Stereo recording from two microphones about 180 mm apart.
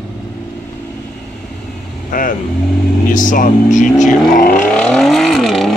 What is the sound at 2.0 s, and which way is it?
Speech, 50° left (ahead or behind).